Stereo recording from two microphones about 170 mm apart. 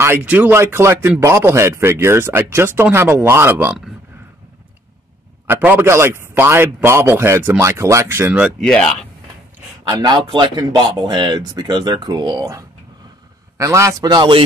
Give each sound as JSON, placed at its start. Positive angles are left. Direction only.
{"t": 0.0, "sound": "speech", "side_deg": -10}
{"t": 5.5, "sound": "speech", "side_deg": -10}
{"t": 8.5, "sound": "speech", "side_deg": 5}
{"t": 9.8, "sound": "speech", "side_deg": -25}